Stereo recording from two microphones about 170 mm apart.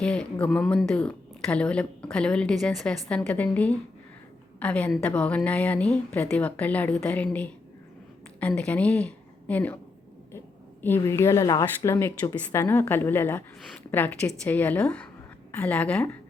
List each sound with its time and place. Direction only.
0.0 s a woman's voice: 5° left (ahead or behind)
10.8 s a woman's voice: 15° left (ahead or behind)
13.6 s a woman's voice: centre (ahead or behind)